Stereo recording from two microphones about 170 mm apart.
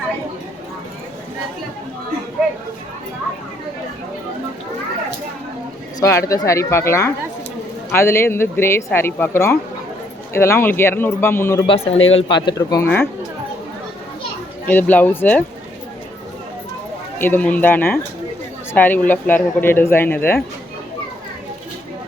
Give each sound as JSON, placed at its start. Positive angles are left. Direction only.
{"t": 6.0, "sound": "speech", "side_deg": 20}
{"t": 11.6, "sound": "speech", "side_deg": 30}
{"t": 14.7, "sound": "speech", "side_deg": 10}
{"t": 17.2, "sound": "speech", "side_deg": 10}